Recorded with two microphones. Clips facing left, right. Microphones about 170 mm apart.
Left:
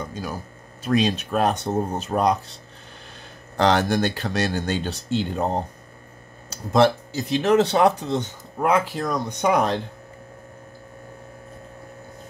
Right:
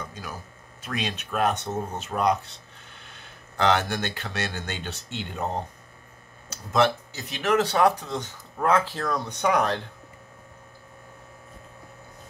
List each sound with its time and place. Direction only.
0.0 s a sound: 35° left (ahead or behind)
0.8 s speech: 35° left (ahead or behind)
3.5 s speech: 35° left (ahead or behind); by 9.8 s 20° left (ahead or behind)